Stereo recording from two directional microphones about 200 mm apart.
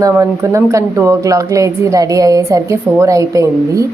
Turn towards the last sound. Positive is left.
turn(degrees=-15)  # may be behind; listen again after turning